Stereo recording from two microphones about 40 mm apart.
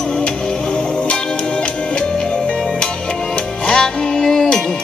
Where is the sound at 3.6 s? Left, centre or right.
Centre.